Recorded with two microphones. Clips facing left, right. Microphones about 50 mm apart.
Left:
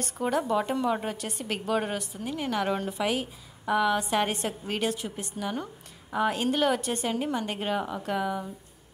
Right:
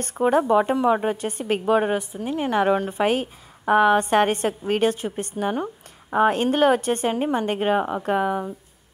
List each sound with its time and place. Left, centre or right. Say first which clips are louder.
0.0 s a woman's voice: right 8 dB; right
2.9 s a woman's voice: right 7 dB; right